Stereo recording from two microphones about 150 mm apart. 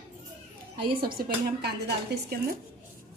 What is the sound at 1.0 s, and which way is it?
Speech, 85° right.